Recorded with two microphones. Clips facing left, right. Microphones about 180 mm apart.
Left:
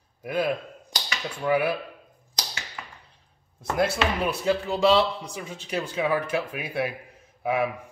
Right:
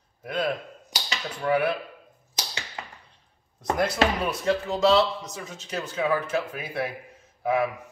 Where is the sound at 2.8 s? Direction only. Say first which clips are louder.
Right 4 dB; 25° right (ahead or behind).